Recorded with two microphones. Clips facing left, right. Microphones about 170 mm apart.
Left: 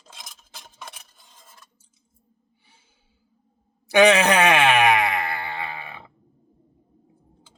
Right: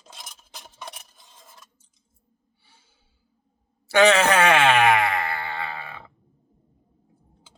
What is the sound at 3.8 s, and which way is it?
Groan, 15° left (ahead or behind).